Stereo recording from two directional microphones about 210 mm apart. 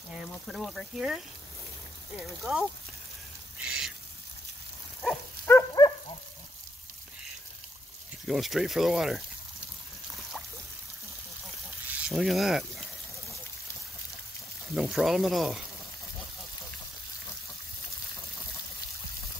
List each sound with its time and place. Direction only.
0.5 s speech: centre (ahead or behind)
3.5 s bird: 5° right (ahead or behind)
5.0 s a sound: centre (ahead or behind)
5.5 s dog: 15° left (ahead or behind)
8.3 s speech: centre (ahead or behind)
11.9 s speech: 5° right (ahead or behind)
14.8 s speech: centre (ahead or behind)